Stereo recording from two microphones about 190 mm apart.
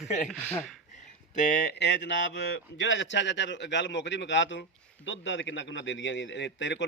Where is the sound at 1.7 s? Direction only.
65° left (ahead or behind).